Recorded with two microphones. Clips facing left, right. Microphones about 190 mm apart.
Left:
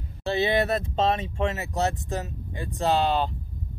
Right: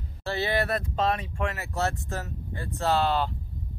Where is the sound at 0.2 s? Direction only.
20° left (ahead or behind).